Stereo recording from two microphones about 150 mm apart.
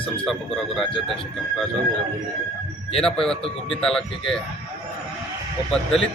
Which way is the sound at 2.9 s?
5° left (ahead or behind).